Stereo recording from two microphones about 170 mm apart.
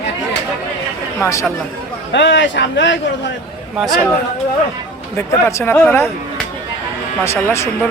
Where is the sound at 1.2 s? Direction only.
15° left (ahead or behind).